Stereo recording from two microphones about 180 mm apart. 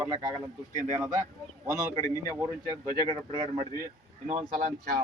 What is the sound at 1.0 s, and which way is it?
Speech, 15° right (ahead or behind).